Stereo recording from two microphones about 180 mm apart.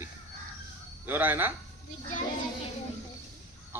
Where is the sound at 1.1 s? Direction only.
10° right (ahead or behind).